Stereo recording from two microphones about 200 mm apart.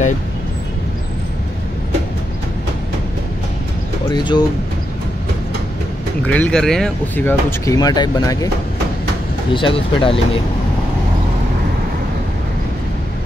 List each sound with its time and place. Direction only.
4.1 s speech: 20° left (ahead or behind)
6.2 s speech: 5° left (ahead or behind)
9.5 s speech: 25° left (ahead or behind)